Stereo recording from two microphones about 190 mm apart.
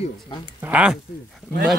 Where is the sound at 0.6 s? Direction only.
5° right (ahead or behind).